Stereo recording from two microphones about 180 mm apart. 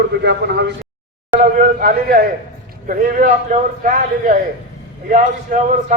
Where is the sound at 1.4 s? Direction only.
50° right (ahead or behind).